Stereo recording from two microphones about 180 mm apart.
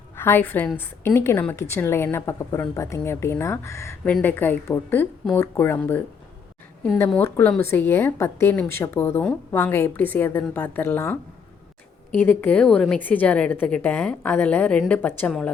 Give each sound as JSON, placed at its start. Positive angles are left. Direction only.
{"t": 0.2, "sound": "a woman's voice", "side_deg": 10}
{"t": 12.2, "sound": "a woman's voice", "side_deg": 10}